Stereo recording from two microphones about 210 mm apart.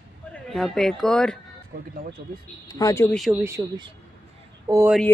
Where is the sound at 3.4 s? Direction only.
15° right (ahead or behind).